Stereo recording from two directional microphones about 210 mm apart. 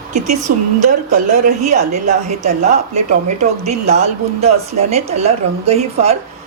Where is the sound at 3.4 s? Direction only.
30° right (ahead or behind).